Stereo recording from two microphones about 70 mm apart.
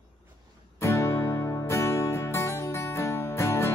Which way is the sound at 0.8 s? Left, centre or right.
Left.